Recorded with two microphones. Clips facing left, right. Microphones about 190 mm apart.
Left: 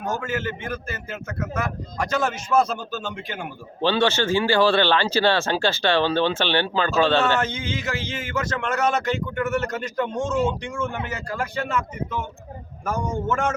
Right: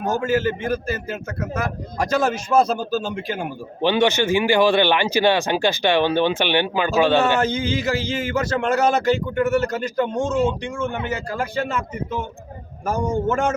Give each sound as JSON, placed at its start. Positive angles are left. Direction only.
{"t": 0.0, "sound": "speech", "side_deg": -30}
{"t": 3.8, "sound": "speech", "side_deg": -15}
{"t": 7.4, "sound": "speech", "side_deg": -35}